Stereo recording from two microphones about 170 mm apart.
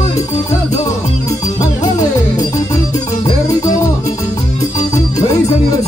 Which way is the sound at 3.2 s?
20° left (ahead or behind).